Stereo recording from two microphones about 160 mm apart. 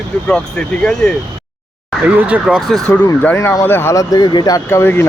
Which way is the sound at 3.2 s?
15° left (ahead or behind).